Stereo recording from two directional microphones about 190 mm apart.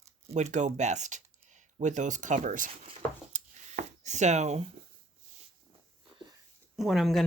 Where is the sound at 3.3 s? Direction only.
40° right (ahead or behind).